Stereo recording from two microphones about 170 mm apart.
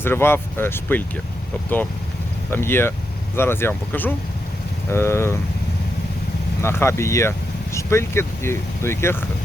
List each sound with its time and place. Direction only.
0.0 s speech: 15° left (ahead or behind)
2.5 s speech: 15° left (ahead or behind)
6.6 s speech: 15° left (ahead or behind)